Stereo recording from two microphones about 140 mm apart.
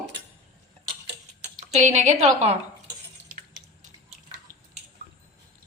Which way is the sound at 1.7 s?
55° right (ahead or behind).